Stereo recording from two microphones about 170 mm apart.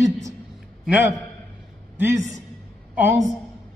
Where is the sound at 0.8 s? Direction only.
10° right (ahead or behind).